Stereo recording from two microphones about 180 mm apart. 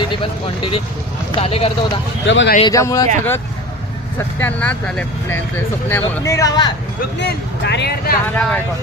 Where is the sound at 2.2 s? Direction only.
90° left.